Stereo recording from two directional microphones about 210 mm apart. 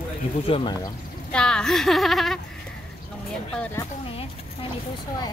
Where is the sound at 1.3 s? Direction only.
5° left (ahead or behind).